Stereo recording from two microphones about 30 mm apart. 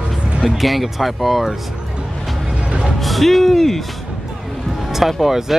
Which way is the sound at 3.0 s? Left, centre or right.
Centre.